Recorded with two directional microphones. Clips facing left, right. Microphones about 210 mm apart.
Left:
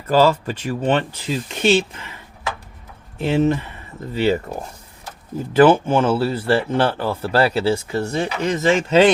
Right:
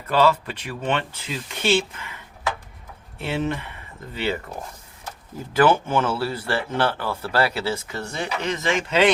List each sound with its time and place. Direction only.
0.1 s speech: 35° left (ahead or behind)
3.2 s speech: 40° left (ahead or behind)
5.5 s speech: 30° left (ahead or behind)